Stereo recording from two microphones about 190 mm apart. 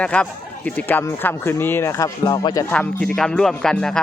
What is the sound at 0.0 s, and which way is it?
Speech, 5° left (ahead or behind).